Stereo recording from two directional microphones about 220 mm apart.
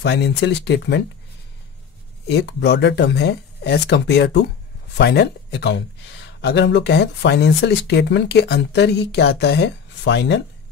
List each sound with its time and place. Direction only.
0.0 s speech: 50° left (ahead or behind)
2.2 s speech: 50° left (ahead or behind)